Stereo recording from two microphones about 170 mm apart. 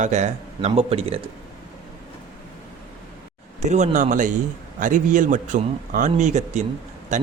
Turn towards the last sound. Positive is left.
turn(degrees=-45)  # may be behind; listen again after turning